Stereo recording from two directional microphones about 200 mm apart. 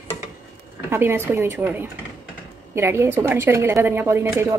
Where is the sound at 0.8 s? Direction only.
10° right (ahead or behind).